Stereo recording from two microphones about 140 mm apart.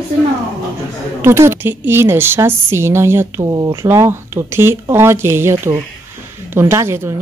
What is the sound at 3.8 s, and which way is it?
Speech, 20° right (ahead or behind).